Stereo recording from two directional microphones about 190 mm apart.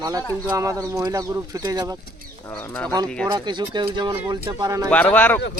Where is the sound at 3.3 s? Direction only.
25° right (ahead or behind).